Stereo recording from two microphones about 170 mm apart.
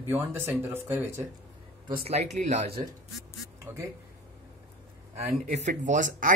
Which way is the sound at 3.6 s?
15° right (ahead or behind).